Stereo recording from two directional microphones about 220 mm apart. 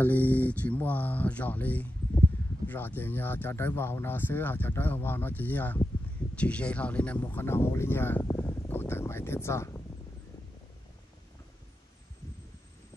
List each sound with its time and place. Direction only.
0.0 s speech: 10° left (ahead or behind)